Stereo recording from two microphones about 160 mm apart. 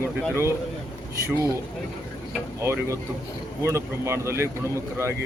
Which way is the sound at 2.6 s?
15° right (ahead or behind).